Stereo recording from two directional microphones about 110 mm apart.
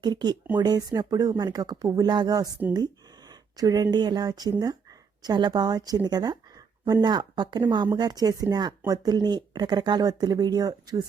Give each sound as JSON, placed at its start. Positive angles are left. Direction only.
{"t": 0.0, "sound": "speech", "side_deg": -40}
{"t": 2.7, "sound": "a sound", "side_deg": -40}
{"t": 3.9, "sound": "speech", "side_deg": -40}